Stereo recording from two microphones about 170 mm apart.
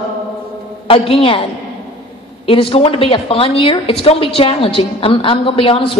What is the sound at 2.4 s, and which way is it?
A woman's voice, 35° left (ahead or behind).